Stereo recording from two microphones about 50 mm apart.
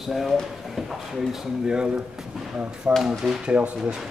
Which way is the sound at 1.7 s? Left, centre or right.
Centre.